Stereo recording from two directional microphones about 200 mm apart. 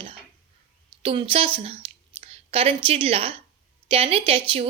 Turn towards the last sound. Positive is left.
turn(degrees=-30)  # may be behind; listen again after turning